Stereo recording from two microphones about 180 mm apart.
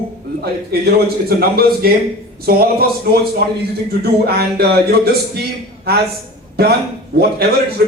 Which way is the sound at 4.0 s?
60° right (ahead or behind).